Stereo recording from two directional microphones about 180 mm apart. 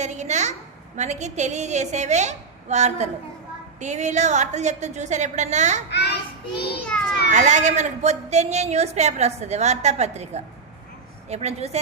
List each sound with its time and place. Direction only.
0.0 s a sound: 40° right (ahead or behind)
0.9 s a man's voice: 40° right (ahead or behind)
5.9 s child singing: 70° left (ahead or behind)
6.9 s children playing: 5° left (ahead or behind)
7.3 s a man's voice: 40° right (ahead or behind)